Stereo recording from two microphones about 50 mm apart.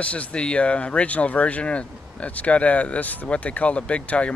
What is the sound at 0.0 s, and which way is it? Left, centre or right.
Speech, left.